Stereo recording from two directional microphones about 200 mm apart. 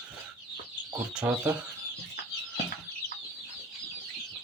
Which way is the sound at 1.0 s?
10° right (ahead or behind).